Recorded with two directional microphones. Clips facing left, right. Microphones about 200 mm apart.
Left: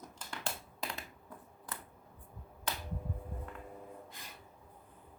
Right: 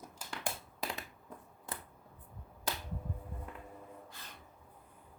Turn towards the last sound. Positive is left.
turn(degrees=15)  # may be behind; listen again after turning